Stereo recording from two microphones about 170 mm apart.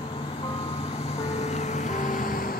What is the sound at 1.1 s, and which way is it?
Music, 40° left (ahead or behind).